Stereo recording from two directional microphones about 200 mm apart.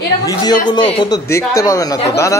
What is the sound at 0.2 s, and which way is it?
A woman's voice, 20° left (ahead or behind).